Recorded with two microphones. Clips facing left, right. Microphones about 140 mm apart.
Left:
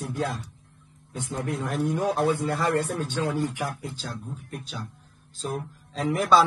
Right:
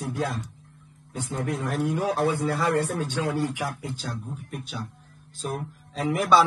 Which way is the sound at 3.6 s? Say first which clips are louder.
Right 1 dB; centre (ahead or behind).